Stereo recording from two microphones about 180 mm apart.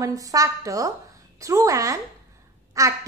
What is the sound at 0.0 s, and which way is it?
A woman's voice, 20° right (ahead or behind).